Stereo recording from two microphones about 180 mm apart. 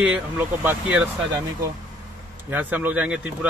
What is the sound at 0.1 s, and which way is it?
Speech, 10° right (ahead or behind).